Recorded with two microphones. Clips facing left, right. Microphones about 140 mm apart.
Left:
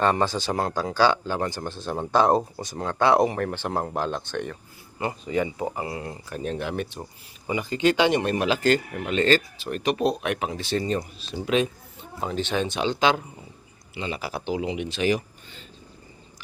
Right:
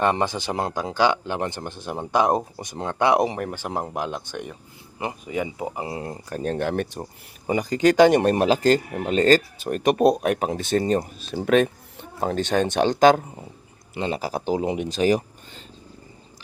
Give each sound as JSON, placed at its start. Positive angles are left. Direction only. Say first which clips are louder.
{"t": 0.0, "sound": "speech", "louder": "even", "side_deg": -20}
{"t": 5.8, "sound": "speech", "louder": "right 2 dB", "side_deg": -30}